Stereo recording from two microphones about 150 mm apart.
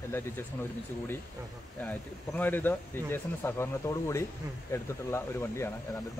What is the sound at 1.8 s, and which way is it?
Speech, 10° left (ahead or behind).